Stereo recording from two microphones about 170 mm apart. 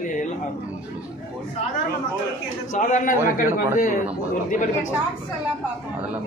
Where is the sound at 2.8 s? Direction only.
50° left (ahead or behind).